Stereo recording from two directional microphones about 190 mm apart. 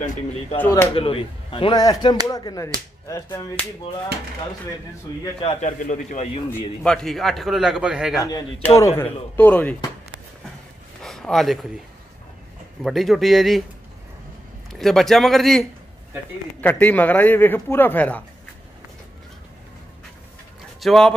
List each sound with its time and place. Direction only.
0.0 s a man's voice: 35° left (ahead or behind)
0.6 s speech: 10° left (ahead or behind)
0.9 s speech: 30° left (ahead or behind)
5.2 s a man's voice: 30° left (ahead or behind)
6.8 s a man's voice: 5° left (ahead or behind)
8.2 s speech: 20° left (ahead or behind)
11.0 s speech: centre (ahead or behind)
12.8 s a man's voice: centre (ahead or behind)
14.7 s a man's voice: centre (ahead or behind)
16.6 s speech: 10° left (ahead or behind)
20.8 s a man's voice: centre (ahead or behind)